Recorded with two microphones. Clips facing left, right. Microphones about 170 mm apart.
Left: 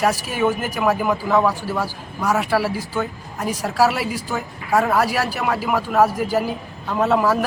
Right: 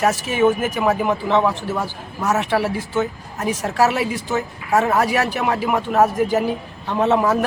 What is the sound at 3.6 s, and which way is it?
Speech, 10° left (ahead or behind).